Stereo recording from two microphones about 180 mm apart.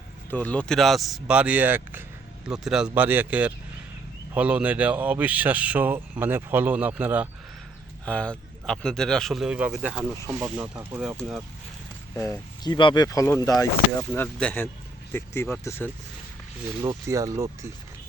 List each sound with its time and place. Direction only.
0.3 s speech: 10° left (ahead or behind); by 7.3 s 10° right (ahead or behind)
8.0 s speech: 5° left (ahead or behind)
10.2 s speech: 20° right (ahead or behind)
11.2 s speech: centre (ahead or behind)
12.1 s speech: 15° left (ahead or behind)
16.8 s speech: 20° right (ahead or behind)